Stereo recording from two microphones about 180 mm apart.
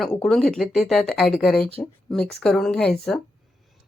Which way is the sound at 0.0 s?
5° left (ahead or behind).